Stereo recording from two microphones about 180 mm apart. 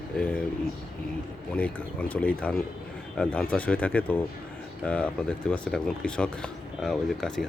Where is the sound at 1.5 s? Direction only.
10° left (ahead or behind).